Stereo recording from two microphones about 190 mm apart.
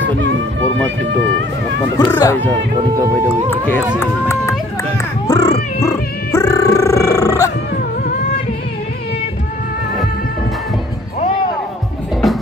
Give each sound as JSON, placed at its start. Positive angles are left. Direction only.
{"t": 0.0, "sound": "speech", "side_deg": -75}
{"t": 2.0, "sound": "speech", "side_deg": 20}
{"t": 4.0, "sound": "cat", "side_deg": 15}
{"t": 7.2, "sound": "dog", "side_deg": 15}